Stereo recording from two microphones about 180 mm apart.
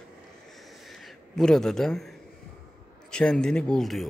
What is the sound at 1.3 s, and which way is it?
A man's voice, 5° left (ahead or behind).